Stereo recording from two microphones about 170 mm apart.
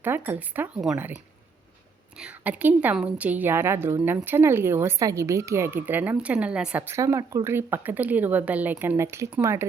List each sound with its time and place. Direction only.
0.0 s a woman's voice: 10° right (ahead or behind)